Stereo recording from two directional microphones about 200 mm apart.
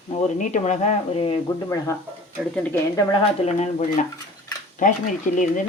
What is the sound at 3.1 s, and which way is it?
Speech, 35° left (ahead or behind).